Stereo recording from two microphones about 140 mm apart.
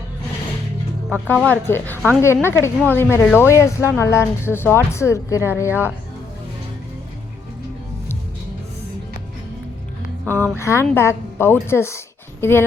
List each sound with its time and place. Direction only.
1.3 s a woman's voice: 10° left (ahead or behind)
10.6 s a woman's voice: 20° left (ahead or behind)